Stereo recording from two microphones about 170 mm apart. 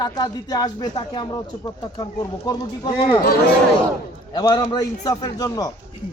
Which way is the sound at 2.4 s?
25° left (ahead or behind).